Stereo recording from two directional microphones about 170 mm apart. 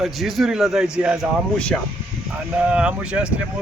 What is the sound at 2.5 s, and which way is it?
Speech, 5° right (ahead or behind).